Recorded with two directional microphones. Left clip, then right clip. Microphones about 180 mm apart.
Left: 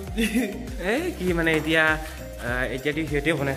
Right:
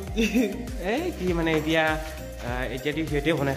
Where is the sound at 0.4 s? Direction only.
Centre (ahead or behind).